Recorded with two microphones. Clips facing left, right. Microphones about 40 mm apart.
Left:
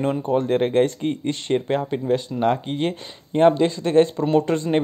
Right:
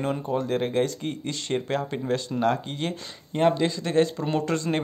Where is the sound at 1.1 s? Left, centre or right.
Left.